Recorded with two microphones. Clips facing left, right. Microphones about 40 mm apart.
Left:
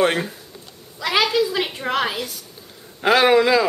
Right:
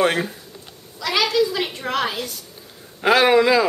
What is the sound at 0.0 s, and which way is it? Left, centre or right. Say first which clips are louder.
Speech: even; centre.